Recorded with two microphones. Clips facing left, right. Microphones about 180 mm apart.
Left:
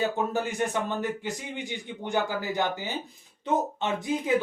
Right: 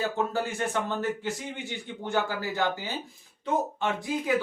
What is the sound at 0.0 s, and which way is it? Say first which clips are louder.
Speech: left 1 dB; 20° left (ahead or behind).